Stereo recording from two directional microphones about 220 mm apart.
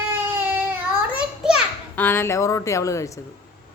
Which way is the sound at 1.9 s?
10° left (ahead or behind).